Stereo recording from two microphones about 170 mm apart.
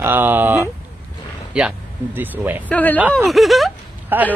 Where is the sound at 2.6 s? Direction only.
10° left (ahead or behind); by 4.3 s 10° right (ahead or behind).